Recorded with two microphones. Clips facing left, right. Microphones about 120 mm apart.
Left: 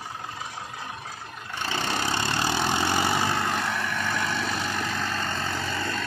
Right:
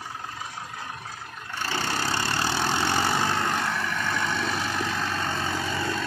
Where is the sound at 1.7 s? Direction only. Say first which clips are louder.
Even; 15° left (ahead or behind).